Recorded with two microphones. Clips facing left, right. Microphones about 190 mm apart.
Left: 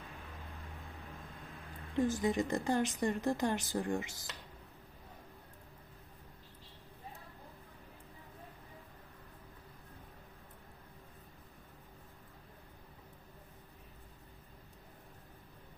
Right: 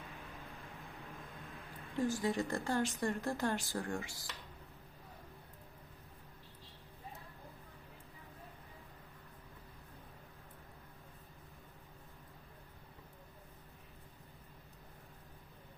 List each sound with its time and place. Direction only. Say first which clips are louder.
2.0 s speech: left 3 dB; 20° left (ahead or behind)